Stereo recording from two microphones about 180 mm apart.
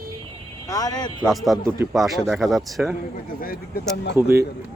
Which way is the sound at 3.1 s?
55° left (ahead or behind).